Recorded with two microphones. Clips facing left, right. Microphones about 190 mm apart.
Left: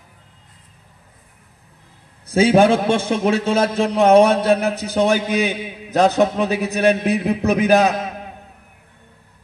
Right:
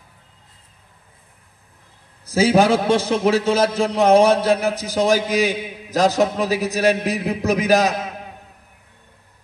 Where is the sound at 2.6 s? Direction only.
55° left (ahead or behind).